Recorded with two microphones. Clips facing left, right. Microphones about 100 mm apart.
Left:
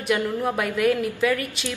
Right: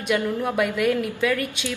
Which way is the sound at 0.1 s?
Centre (ahead or behind).